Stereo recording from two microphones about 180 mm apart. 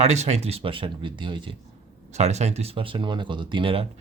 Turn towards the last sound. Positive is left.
turn(degrees=-30)  # may be behind; listen again after turning